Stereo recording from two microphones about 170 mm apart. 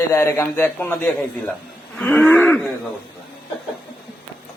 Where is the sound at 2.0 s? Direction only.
10° left (ahead or behind).